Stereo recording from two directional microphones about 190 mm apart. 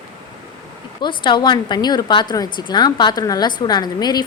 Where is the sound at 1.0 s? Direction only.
25° left (ahead or behind).